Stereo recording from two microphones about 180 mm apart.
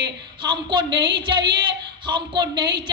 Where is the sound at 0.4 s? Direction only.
25° right (ahead or behind).